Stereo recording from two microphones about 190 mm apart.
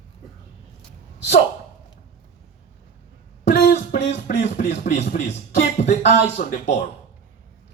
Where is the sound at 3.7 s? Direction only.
40° left (ahead or behind).